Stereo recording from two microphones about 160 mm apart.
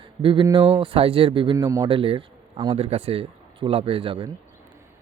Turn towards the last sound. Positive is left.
turn(degrees=-35)  # may be behind; listen again after turning